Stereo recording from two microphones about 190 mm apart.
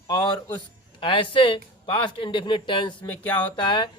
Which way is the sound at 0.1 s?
20° left (ahead or behind).